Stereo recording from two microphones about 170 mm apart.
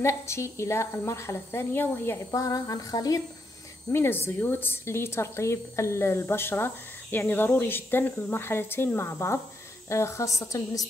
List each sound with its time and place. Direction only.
0.0 s speech: 15° left (ahead or behind)